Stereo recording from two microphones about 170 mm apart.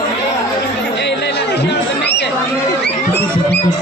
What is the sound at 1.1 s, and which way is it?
Chatter, 85° left.